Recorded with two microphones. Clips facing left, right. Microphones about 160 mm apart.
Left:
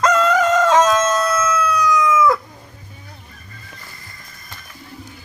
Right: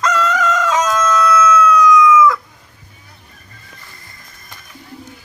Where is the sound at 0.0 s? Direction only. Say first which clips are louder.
Left 2 dB; 30° left (ahead or behind).